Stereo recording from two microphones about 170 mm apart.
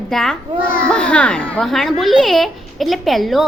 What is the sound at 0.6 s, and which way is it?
Speech, 55° left (ahead or behind).